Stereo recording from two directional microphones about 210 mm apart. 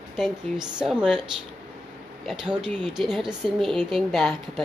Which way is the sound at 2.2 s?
5° right (ahead or behind).